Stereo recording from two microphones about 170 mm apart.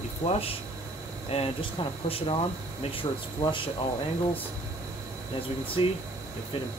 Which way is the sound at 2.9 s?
30° left (ahead or behind).